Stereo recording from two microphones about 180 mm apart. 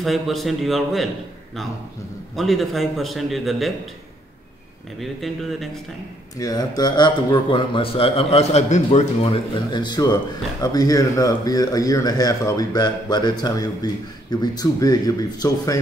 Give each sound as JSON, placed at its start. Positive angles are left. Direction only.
{"t": 0.0, "sound": "a man's voice", "side_deg": 0}
{"t": 5.0, "sound": "a man's voice", "side_deg": 0}
{"t": 6.3, "sound": "a man's voice", "side_deg": 20}